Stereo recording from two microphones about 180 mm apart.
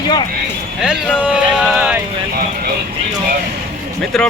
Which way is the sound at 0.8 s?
5° right (ahead or behind).